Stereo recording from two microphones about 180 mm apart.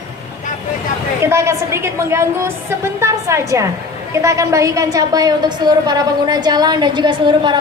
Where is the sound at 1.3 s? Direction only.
15° right (ahead or behind).